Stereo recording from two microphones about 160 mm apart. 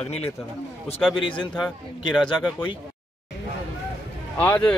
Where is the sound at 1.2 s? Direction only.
30° left (ahead or behind).